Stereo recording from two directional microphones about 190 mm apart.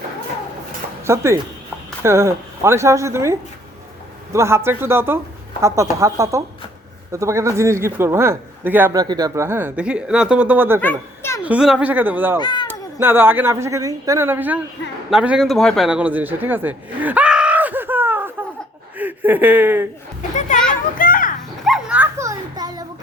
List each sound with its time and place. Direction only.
1.0 s a man's voice: 15° right (ahead or behind)
10.8 s a child's voice: 10° left (ahead or behind)
11.4 s a man's voice: 5° right (ahead or behind)
12.4 s speech: 25° left (ahead or behind)
12.6 s a man's voice: 10° right (ahead or behind)
21.0 s a sound: 45° left (ahead or behind)
21.6 s dog: 5° right (ahead or behind); by 22.9 s 20° right (ahead or behind)